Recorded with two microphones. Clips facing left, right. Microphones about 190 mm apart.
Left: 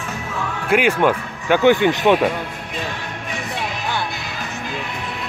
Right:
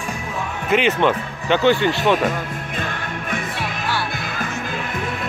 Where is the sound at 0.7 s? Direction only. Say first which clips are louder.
Left 1 dB; 10° left (ahead or behind).